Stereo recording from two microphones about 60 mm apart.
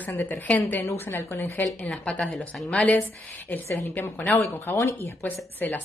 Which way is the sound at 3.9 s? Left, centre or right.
Left.